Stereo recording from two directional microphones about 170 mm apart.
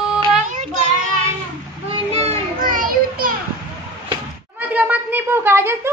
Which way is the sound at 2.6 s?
55° right (ahead or behind).